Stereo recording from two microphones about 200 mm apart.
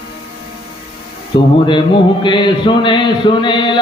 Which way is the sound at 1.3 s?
25° left (ahead or behind).